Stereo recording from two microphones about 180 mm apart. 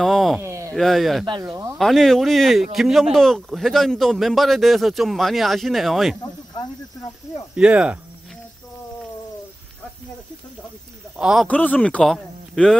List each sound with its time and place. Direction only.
0.0 s a sound: centre (ahead or behind)
0.4 s a sound: 15° right (ahead or behind)
0.7 s speech: centre (ahead or behind)
1.2 s speech: 25° right (ahead or behind)
1.8 s speech: centre (ahead or behind)
7.5 s speech: 5° right (ahead or behind)
11.1 s speech: 5° right (ahead or behind)
11.4 s a man's voice: 10° left (ahead or behind)